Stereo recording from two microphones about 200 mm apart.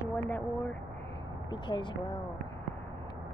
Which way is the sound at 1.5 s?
25° left (ahead or behind).